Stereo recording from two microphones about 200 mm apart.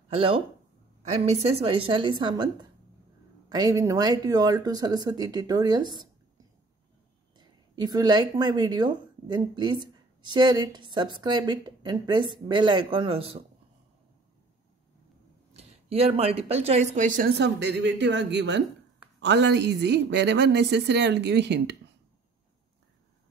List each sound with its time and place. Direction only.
0.1 s a woman's voice: 25° right (ahead or behind)
7.3 s a woman's voice: 20° right (ahead or behind)
15.5 s a woman's voice: 30° right (ahead or behind); by 21.7 s 60° right (ahead or behind)